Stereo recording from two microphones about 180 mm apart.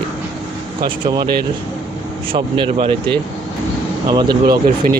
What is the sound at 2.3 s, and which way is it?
Speech, 30° right (ahead or behind).